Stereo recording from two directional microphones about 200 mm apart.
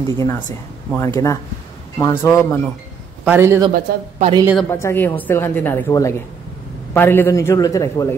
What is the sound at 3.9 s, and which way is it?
Speech, 55° right (ahead or behind).